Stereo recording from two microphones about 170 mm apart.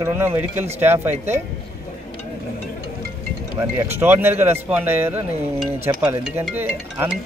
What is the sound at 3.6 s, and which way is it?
Speech, 15° right (ahead or behind).